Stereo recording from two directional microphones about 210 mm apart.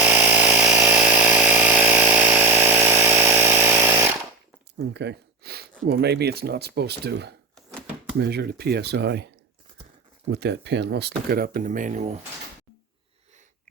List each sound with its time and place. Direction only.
0.0 s a sound: 10° right (ahead or behind)
4.8 s gasp: 50° right (ahead or behind)
5.9 s speech: 50° right (ahead or behind)
10.3 s speech: 50° right (ahead or behind); by 12.1 s 35° right (ahead or behind)